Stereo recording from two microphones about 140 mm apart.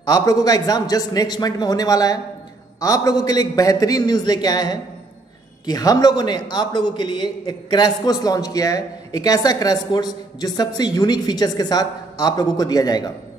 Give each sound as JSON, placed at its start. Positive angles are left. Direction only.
{"t": 0.0, "sound": "a man's voice", "side_deg": 25}